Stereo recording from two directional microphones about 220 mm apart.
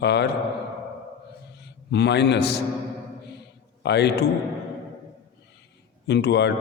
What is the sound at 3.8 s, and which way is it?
Speech, 50° left (ahead or behind).